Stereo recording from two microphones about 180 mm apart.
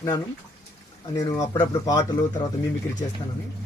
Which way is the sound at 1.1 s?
20° left (ahead or behind).